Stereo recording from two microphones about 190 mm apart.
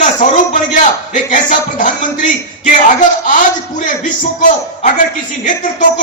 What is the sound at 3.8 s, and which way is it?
Speech, 40° left (ahead or behind).